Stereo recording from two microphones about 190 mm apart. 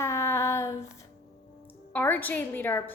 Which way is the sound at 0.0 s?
15° left (ahead or behind).